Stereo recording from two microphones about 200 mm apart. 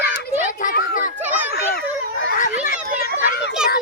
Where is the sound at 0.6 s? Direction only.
50° left (ahead or behind).